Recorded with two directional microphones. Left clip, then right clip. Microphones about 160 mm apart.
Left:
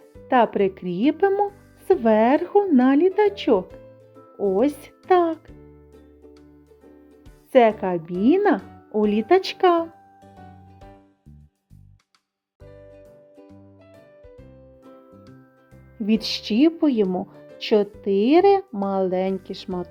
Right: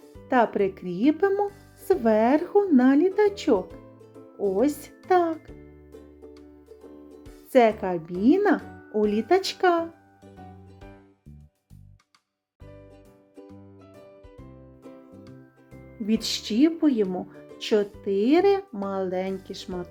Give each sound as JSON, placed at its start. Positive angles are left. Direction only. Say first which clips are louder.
{"t": 0.3, "sound": "a child's voice", "louder": "left 3 dB", "side_deg": 25}
{"t": 7.5, "sound": "speech", "louder": "left 3 dB", "side_deg": 25}
{"t": 12.9, "sound": "music", "louder": "left 6 dB", "side_deg": -5}
{"t": 16.0, "sound": "speech", "louder": "left 3 dB", "side_deg": 35}